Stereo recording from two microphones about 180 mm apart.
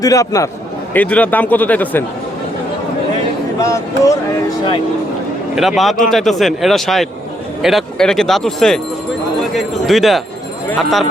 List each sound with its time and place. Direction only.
0.0 s speech: 20° left (ahead or behind)
3.6 s speech: 15° left (ahead or behind)
5.5 s speech: centre (ahead or behind)
9.8 s speech: centre (ahead or behind)